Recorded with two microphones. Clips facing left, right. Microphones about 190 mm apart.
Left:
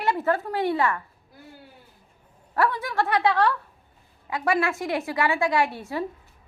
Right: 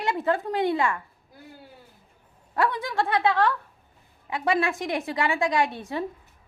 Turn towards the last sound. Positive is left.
turn(degrees=-20)  # may be behind; listen again after turning